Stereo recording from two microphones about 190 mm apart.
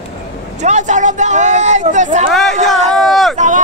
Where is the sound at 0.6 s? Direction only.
40° right (ahead or behind).